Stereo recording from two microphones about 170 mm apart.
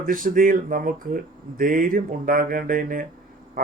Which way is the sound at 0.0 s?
55° right (ahead or behind).